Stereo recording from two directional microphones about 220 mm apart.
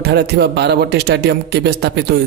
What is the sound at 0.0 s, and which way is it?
A man's voice, 50° right (ahead or behind).